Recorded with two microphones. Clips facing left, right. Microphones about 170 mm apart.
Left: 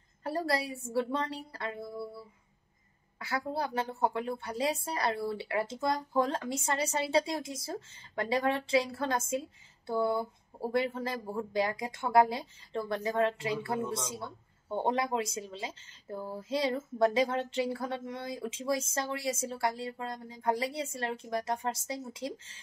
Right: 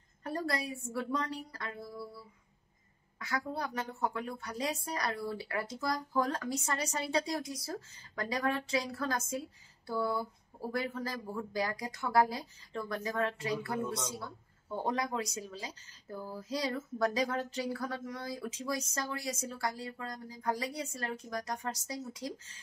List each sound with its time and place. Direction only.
0.2 s a woman's voice: 30° left (ahead or behind)
3.2 s speech: 30° left (ahead or behind)